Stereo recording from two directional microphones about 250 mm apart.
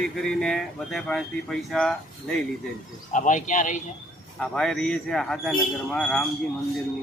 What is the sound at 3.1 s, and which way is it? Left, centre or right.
Speech, left.